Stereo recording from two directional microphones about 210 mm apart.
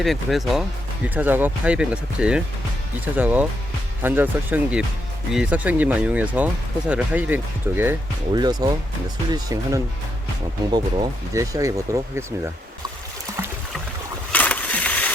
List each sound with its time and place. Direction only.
0.0 s speech: centre (ahead or behind)
14.3 s crushing: 5° left (ahead or behind)